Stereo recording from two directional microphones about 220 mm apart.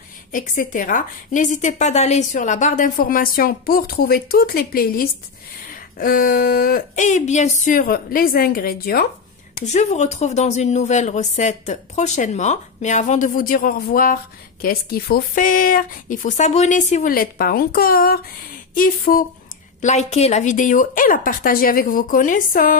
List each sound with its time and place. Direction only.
0.3 s speech: 35° left (ahead or behind)
9.6 s speech: 30° left (ahead or behind)